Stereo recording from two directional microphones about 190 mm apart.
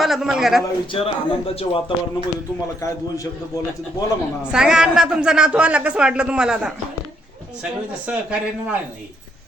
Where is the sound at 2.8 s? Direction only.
15° left (ahead or behind).